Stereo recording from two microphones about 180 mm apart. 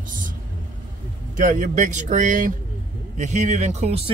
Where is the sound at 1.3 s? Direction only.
45° right (ahead or behind).